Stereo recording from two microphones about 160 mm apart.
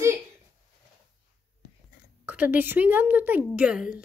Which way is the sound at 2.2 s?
10° right (ahead or behind).